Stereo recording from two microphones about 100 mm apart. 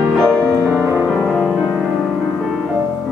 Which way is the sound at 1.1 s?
Centre (ahead or behind).